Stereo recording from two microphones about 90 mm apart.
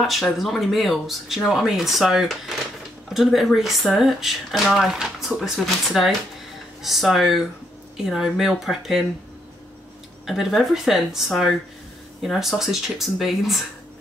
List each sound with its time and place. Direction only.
0.0 s speech: centre (ahead or behind)
10.2 s speech: centre (ahead or behind)